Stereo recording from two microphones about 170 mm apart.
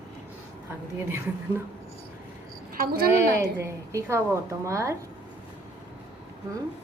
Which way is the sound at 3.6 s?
15° right (ahead or behind).